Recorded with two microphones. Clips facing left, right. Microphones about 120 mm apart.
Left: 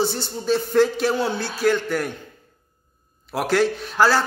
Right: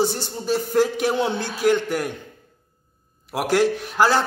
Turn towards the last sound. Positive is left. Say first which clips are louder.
# even
turn(degrees=-15)  # may be behind; listen again after turning